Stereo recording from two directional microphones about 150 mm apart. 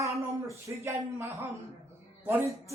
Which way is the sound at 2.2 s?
15° right (ahead or behind).